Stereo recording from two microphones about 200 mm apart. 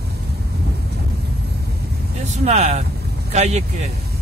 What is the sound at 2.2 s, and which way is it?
Speech, 35° right (ahead or behind).